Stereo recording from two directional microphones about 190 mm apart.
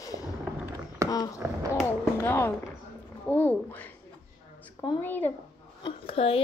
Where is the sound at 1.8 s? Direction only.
15° left (ahead or behind).